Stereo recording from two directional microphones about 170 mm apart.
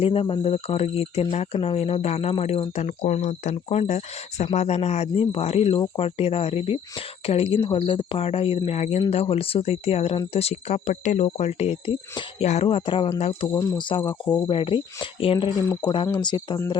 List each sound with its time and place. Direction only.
0.0 s speech: 35° left (ahead or behind)
13.5 s speech: 20° left (ahead or behind)